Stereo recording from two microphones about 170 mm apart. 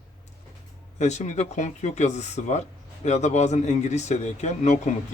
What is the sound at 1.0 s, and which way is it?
Speech, 45° left (ahead or behind).